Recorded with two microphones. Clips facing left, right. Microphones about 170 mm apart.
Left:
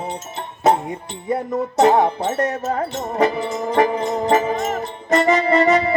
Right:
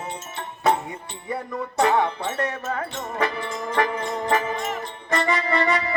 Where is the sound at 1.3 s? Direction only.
40° left (ahead or behind).